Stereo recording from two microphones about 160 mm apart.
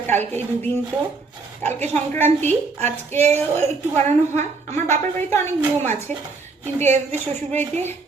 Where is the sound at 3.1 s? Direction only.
45° right (ahead or behind).